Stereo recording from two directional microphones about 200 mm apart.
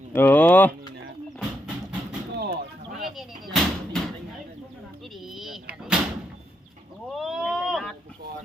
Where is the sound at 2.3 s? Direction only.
55° right (ahead or behind).